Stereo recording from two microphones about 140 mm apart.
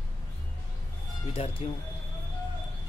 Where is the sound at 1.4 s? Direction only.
45° left (ahead or behind).